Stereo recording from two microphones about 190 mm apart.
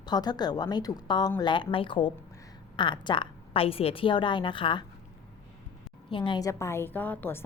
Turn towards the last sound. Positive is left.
turn(degrees=10)  # may be behind; listen again after turning